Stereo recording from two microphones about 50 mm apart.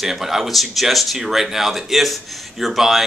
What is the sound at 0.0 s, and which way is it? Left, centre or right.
Speech, centre.